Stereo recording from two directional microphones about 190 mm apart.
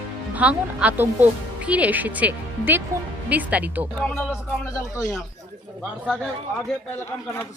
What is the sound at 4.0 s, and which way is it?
Speech, 5° left (ahead or behind).